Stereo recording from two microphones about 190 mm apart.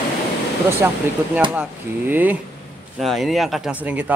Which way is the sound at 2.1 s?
10° right (ahead or behind).